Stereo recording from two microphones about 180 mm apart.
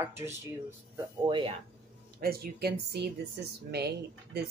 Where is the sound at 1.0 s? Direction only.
25° right (ahead or behind).